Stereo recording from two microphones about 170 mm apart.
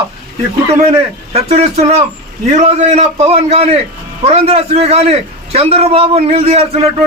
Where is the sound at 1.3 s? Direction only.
35° right (ahead or behind).